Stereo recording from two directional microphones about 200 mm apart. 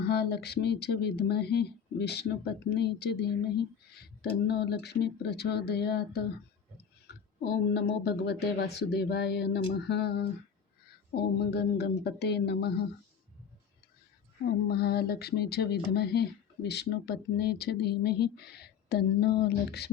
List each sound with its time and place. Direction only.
0.0 s speech: 55° left (ahead or behind)
14.7 s speech: 55° left (ahead or behind)